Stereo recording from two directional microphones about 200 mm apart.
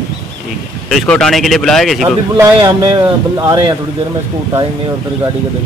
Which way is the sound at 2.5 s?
20° right (ahead or behind).